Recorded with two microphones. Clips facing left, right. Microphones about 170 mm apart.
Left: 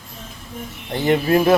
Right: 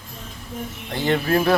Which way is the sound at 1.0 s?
15° left (ahead or behind).